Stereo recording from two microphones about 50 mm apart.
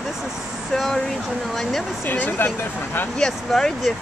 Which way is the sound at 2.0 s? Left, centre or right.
Left.